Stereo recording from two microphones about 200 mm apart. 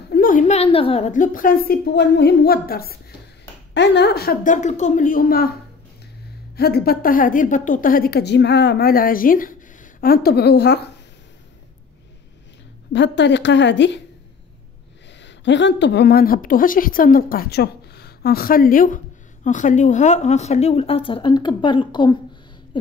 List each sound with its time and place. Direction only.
0.1 s a woman's voice: 45° left (ahead or behind)
6.5 s a woman's voice: 50° left (ahead or behind)
12.9 s a woman's voice: 60° left (ahead or behind)
15.2 s a woman's voice: 65° left (ahead or behind); by 22.1 s 25° left (ahead or behind)